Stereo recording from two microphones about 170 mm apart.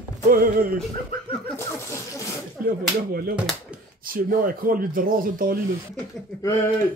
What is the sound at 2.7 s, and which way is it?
Speech, 60° right (ahead or behind).